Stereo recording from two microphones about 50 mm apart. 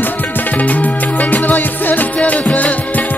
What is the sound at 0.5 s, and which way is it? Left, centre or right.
Music, left.